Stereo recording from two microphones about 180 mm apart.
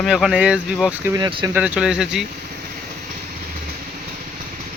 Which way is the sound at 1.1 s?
25° right (ahead or behind).